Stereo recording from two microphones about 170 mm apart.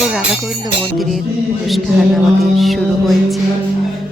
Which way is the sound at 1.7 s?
Centre (ahead or behind).